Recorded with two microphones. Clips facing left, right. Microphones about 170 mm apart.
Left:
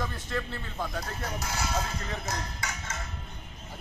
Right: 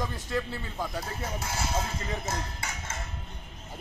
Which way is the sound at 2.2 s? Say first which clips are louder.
Right 1 dB; 25° right (ahead or behind).